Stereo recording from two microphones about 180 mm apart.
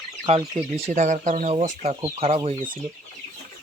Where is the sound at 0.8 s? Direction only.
40° right (ahead or behind).